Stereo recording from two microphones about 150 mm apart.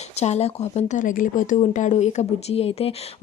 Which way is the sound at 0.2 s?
45° left (ahead or behind).